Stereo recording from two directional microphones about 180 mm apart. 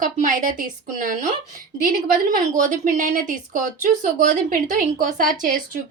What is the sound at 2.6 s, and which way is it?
Speech, 45° right (ahead or behind).